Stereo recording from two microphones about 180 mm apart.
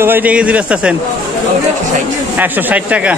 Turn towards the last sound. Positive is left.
turn(degrees=-5)  # may be behind; listen again after turning